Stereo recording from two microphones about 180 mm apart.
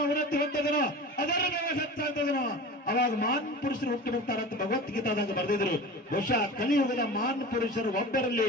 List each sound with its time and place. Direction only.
0.1 s a man's voice: 50° left (ahead or behind)